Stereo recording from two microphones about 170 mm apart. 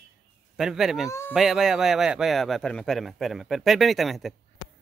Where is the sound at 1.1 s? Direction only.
15° left (ahead or behind).